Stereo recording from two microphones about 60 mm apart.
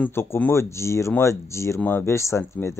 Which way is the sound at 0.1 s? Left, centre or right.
Left.